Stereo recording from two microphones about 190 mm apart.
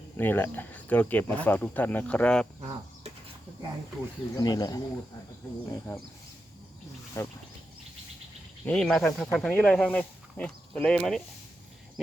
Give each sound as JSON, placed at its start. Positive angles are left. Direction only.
{"t": 0.2, "sound": "speech", "side_deg": 10}
{"t": 4.4, "sound": "speech", "side_deg": 20}
{"t": 7.2, "sound": "speech", "side_deg": 15}
{"t": 8.6, "sound": "speech", "side_deg": 5}